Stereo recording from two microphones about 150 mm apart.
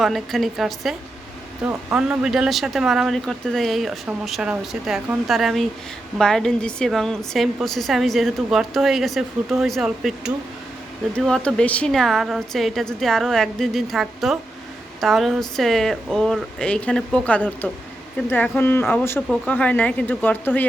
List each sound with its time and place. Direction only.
0.0 s a woman's voice: centre (ahead or behind)